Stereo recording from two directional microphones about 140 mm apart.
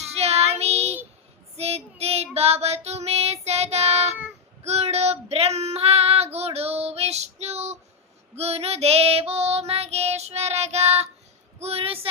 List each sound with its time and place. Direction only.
0.1 s child singing: 50° right (ahead or behind)
4.6 s female singing: 50° right (ahead or behind)
8.4 s child singing: 45° right (ahead or behind)
11.6 s a sound: 45° right (ahead or behind)